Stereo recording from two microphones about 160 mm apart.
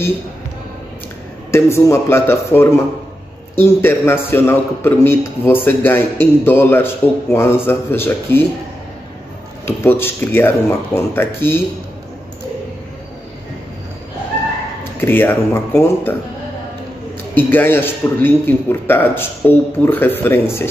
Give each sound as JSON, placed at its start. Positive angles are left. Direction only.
{"t": 1.5, "sound": "a man's voice", "side_deg": 15}
{"t": 9.7, "sound": "a man's voice", "side_deg": 15}
{"t": 15.0, "sound": "a man's voice", "side_deg": 15}
{"t": 17.5, "sound": "a man's voice", "side_deg": 10}